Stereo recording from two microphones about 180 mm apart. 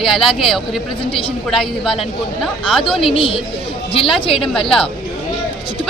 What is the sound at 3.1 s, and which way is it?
A woman's voice, 30° left (ahead or behind).